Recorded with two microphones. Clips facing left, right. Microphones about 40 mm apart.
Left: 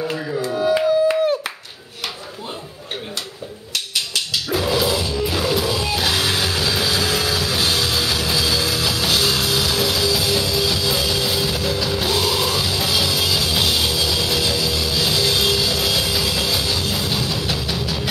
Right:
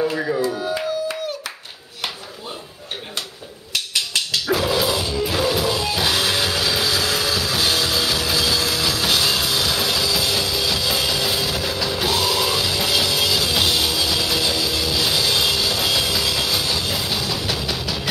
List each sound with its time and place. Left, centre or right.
0.2 s tabla: right
0.6 s tabla: left
4.6 s music: centre